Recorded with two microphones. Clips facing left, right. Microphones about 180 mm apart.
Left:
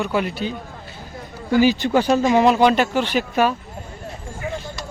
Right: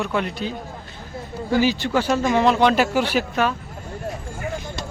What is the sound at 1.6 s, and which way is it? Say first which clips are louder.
Speech: left 6 dB; 15° left (ahead or behind).